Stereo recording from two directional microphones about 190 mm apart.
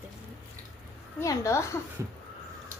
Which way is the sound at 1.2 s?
15° left (ahead or behind).